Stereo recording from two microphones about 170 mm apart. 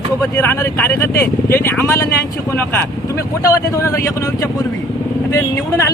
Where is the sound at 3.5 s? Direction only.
15° left (ahead or behind).